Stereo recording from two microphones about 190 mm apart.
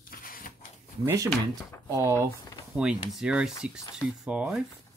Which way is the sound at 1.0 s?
15° right (ahead or behind).